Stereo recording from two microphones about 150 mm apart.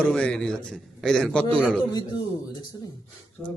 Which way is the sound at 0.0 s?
5° left (ahead or behind).